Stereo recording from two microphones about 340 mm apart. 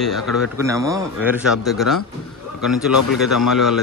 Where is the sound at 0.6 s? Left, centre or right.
Centre.